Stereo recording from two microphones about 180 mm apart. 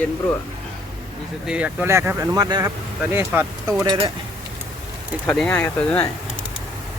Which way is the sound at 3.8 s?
25° right (ahead or behind).